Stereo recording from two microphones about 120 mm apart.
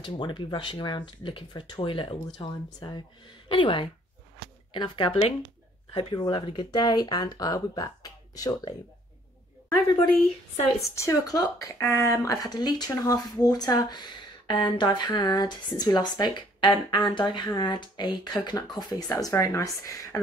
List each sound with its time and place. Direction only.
0.0 s speech: 40° left (ahead or behind)
10.8 s speech: 25° left (ahead or behind)